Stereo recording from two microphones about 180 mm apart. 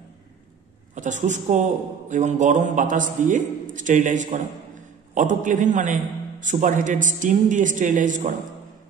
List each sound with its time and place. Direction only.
0.9 s a man's voice: 40° right (ahead or behind)